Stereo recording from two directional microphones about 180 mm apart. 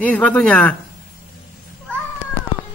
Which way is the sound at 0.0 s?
10° left (ahead or behind).